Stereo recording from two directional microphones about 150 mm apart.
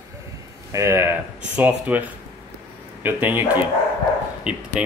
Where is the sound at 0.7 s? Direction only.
20° right (ahead or behind).